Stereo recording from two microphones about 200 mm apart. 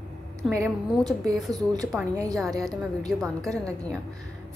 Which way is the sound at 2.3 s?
Centre (ahead or behind).